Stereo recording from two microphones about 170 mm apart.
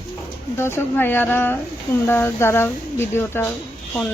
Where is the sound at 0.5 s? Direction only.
15° left (ahead or behind).